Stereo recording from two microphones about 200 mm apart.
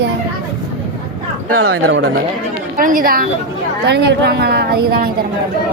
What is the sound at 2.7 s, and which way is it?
Speech, 45° right (ahead or behind).